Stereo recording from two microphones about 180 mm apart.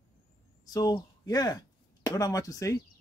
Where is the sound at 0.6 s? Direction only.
20° left (ahead or behind).